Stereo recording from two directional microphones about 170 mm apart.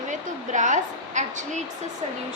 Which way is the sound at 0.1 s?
45° right (ahead or behind).